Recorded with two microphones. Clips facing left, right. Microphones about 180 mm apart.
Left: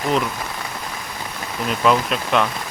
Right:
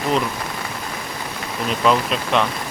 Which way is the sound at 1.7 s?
Centre (ahead or behind).